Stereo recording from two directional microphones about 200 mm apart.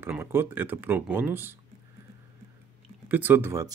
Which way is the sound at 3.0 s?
10° right (ahead or behind).